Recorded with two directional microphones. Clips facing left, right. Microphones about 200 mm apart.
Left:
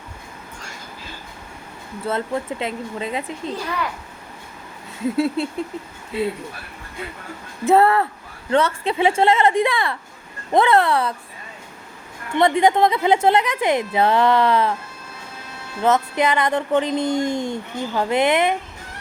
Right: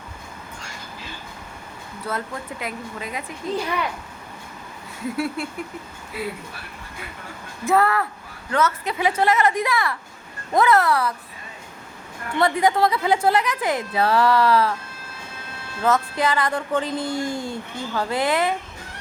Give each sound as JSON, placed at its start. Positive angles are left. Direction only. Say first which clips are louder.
{"t": 2.0, "sound": "speech", "louder": "left 6 dB", "side_deg": 25}
{"t": 5.0, "sound": "speech", "louder": "left 6 dB", "side_deg": 25}
{"t": 7.7, "sound": "speech", "louder": "left 4 dB", "side_deg": 30}
{"t": 12.4, "sound": "speech", "louder": "left 3 dB", "side_deg": 25}
{"t": 15.8, "sound": "speech", "louder": "left 3 dB", "side_deg": 20}